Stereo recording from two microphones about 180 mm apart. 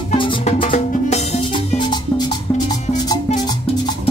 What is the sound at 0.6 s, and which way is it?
Music, 45° left (ahead or behind).